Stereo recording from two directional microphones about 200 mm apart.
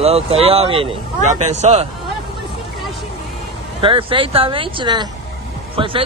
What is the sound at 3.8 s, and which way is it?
Speech, 25° right (ahead or behind).